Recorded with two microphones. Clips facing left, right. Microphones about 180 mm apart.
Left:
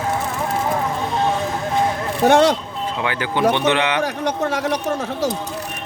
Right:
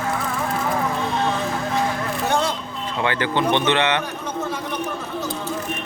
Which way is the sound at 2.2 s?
75° left (ahead or behind).